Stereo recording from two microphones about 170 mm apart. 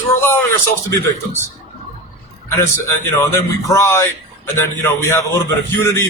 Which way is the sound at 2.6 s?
15° left (ahead or behind).